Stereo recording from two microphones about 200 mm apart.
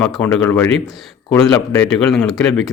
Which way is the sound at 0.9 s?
Centre (ahead or behind).